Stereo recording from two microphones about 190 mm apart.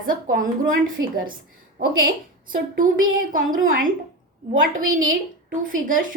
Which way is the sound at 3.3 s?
45° right (ahead or behind).